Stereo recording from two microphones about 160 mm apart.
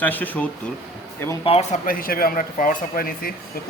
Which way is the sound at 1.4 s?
40° left (ahead or behind).